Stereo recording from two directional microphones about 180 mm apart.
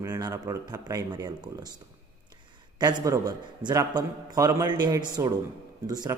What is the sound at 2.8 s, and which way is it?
Speech, 20° right (ahead or behind).